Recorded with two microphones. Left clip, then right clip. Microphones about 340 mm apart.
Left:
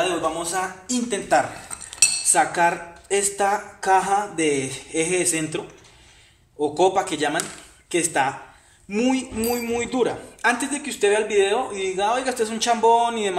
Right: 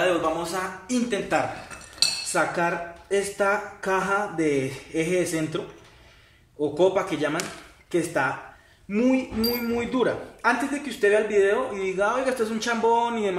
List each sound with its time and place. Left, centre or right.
0.4 s speech: centre
6.6 s speech: left